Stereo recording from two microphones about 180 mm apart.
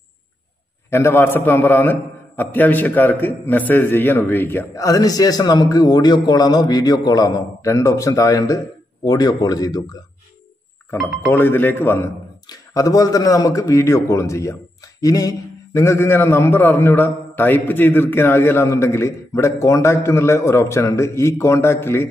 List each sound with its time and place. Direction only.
0.8 s a man's voice: 15° left (ahead or behind)
11.0 s speech: 5° right (ahead or behind)
11.3 s a man's voice: 10° left (ahead or behind)